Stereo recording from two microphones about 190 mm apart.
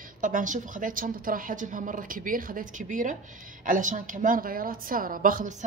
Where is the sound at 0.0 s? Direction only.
45° right (ahead or behind).